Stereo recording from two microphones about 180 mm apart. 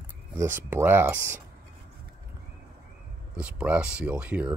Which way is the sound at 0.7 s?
10° right (ahead or behind).